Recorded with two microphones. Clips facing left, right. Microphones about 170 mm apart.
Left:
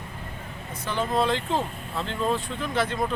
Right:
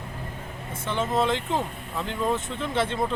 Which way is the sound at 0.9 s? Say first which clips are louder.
Even; 25° right (ahead or behind).